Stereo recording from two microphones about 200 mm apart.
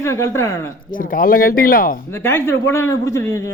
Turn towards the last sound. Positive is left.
turn(degrees=15)  # may be behind; listen again after turning